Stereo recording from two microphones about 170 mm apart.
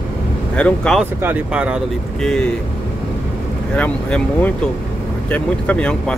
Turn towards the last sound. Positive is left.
turn(degrees=5)  # may be behind; listen again after turning